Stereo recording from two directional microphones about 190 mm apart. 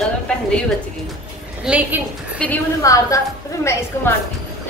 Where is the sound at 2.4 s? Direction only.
10° left (ahead or behind).